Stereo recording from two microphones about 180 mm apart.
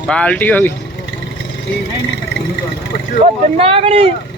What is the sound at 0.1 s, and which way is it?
Speech, 5° left (ahead or behind).